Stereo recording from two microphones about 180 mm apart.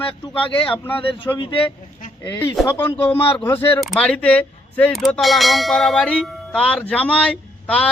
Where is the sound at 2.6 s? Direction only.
10° left (ahead or behind).